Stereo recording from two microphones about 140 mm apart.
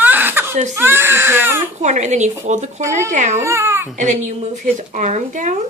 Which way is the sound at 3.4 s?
20° right (ahead or behind).